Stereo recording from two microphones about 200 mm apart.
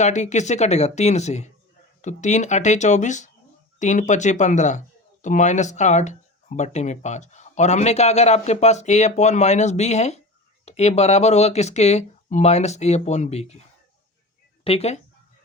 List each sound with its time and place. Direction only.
0.0 s speech: 35° left (ahead or behind)
14.6 s speech: 30° left (ahead or behind)